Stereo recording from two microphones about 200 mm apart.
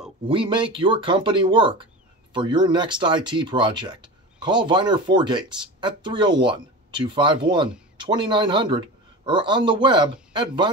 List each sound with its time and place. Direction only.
0.3 s speech: 25° right (ahead or behind)